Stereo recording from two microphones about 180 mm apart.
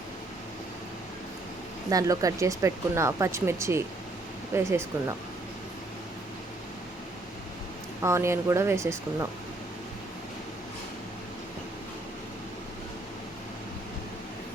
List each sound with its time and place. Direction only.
1.9 s speech: 20° right (ahead or behind)
8.0 s speech: 15° right (ahead or behind)